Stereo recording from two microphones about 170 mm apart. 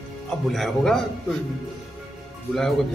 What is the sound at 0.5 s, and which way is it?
Speech, centre (ahead or behind).